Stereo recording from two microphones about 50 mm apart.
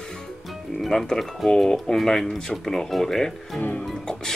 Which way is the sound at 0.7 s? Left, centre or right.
Centre.